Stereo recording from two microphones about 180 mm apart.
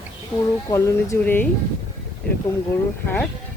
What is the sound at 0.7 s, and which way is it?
Speech, 15° left (ahead or behind).